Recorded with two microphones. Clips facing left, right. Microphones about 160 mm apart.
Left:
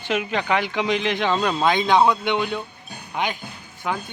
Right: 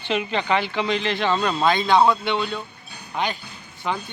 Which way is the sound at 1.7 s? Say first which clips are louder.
Even; 15° left (ahead or behind).